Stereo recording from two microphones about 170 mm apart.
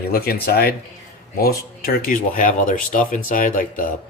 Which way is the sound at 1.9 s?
60° left (ahead or behind).